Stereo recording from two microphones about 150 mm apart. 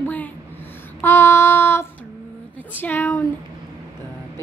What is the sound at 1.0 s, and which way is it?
Female singing, 15° left (ahead or behind).